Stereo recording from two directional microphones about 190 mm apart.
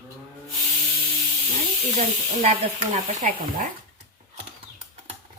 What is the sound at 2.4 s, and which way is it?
Speech, 45° right (ahead or behind).